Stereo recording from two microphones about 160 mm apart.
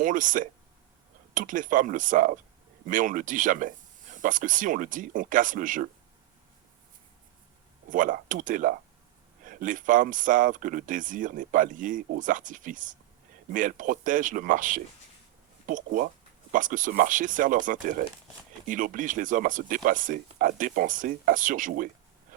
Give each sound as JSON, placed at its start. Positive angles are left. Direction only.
{"t": 0.0, "sound": "speech", "side_deg": -55}
{"t": 7.9, "sound": "speech", "side_deg": -55}
{"t": 22.3, "sound": "a sound", "side_deg": -55}